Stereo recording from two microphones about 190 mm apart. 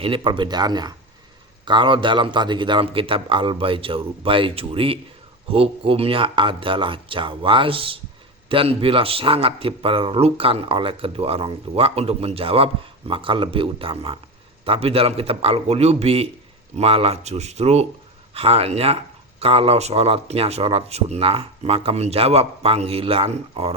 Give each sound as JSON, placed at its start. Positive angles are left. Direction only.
{"t": 0.0, "sound": "a man's voice", "side_deg": -25}